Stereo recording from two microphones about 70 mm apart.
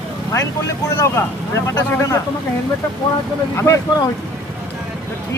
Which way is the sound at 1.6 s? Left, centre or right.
Left.